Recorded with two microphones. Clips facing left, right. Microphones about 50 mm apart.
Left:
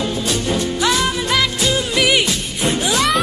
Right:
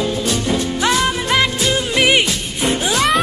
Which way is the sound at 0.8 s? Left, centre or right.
Right.